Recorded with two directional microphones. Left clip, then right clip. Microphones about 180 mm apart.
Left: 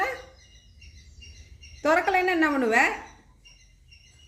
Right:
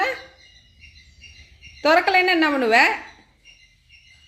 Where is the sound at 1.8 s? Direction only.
25° right (ahead or behind).